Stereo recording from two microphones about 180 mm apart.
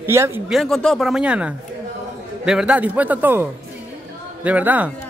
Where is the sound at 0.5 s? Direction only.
Centre (ahead or behind).